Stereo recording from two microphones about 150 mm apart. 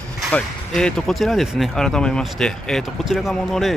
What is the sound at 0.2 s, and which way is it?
Speech, 5° left (ahead or behind).